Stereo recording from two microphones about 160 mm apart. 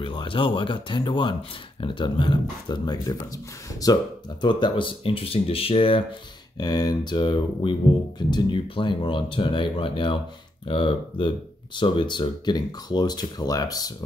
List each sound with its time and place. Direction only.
0.0 s speech: 30° left (ahead or behind)